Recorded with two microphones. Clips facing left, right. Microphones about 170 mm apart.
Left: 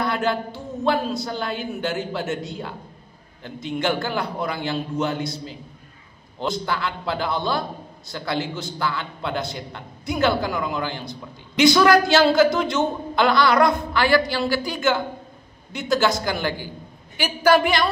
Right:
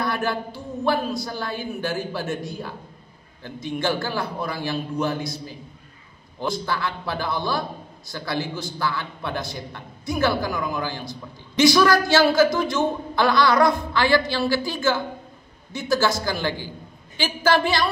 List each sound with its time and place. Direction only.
0.0 s a woman's voice: 20° left (ahead or behind)